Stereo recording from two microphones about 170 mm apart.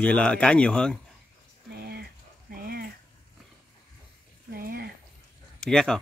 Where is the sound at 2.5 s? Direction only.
65° right (ahead or behind).